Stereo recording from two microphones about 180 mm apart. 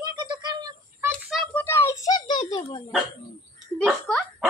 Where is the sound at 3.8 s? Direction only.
5° left (ahead or behind).